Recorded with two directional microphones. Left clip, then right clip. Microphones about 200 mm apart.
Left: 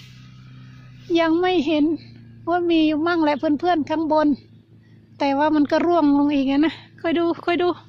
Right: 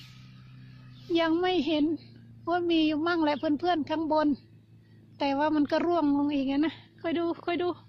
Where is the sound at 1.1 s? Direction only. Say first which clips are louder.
Left 7 dB; 15° left (ahead or behind).